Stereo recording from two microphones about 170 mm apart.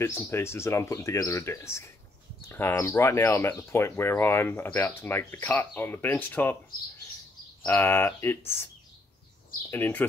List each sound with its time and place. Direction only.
0.0 s speech: 15° left (ahead or behind)
7.6 s speech: 10° left (ahead or behind)
9.7 s speech: 10° left (ahead or behind)